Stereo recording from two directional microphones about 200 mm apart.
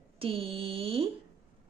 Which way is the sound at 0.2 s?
30° right (ahead or behind).